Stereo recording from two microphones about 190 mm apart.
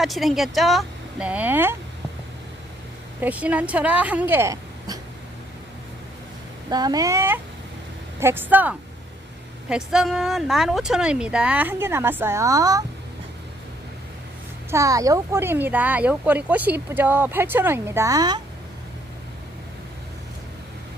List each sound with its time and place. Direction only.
0.0 s speech: centre (ahead or behind)
3.2 s speech: 10° right (ahead or behind)
6.7 s speech: 20° right (ahead or behind)
14.7 s speech: 15° right (ahead or behind)